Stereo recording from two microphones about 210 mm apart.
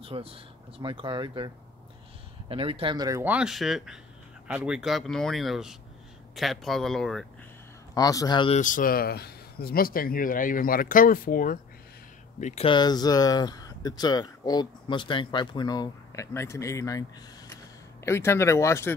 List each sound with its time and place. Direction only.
0.0 s speech: 25° right (ahead or behind); by 7.2 s centre (ahead or behind)
7.9 s speech: 15° left (ahead or behind)
8.5 s speech: 40° left (ahead or behind); by 17.0 s 15° left (ahead or behind)
18.0 s speech: 10° left (ahead or behind)